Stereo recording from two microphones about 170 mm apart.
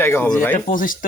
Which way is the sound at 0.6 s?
55° left (ahead or behind).